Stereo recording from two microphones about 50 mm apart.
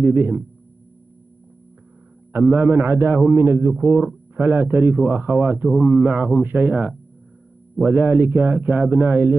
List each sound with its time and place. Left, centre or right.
0.0 s a man's voice: right
2.5 s a man's voice: right